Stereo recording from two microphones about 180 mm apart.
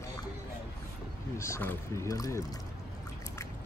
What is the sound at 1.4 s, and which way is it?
Speech, 15° left (ahead or behind).